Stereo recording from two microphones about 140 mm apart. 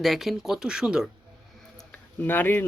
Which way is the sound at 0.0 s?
Centre (ahead or behind).